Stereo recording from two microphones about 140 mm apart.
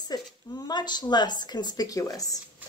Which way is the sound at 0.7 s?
30° left (ahead or behind).